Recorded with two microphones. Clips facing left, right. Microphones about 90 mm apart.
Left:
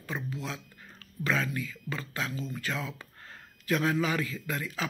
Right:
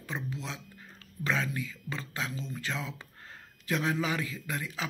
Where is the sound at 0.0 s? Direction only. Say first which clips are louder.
Left 1 dB; 20° right (ahead or behind).